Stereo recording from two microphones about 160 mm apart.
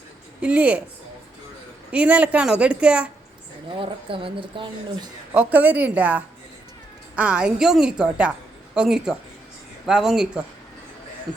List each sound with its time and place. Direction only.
0.4 s a woman's voice: 10° right (ahead or behind)
1.9 s a woman's voice: 10° right (ahead or behind)
3.8 s speech: 35° right (ahead or behind)
5.3 s a woman's voice: 10° right (ahead or behind)